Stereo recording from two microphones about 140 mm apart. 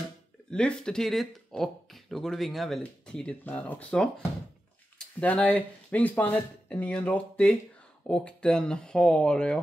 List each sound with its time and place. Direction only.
0.5 s speech: 5° left (ahead or behind)